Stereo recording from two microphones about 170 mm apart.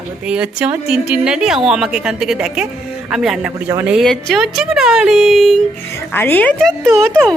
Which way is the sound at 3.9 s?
Centre (ahead or behind).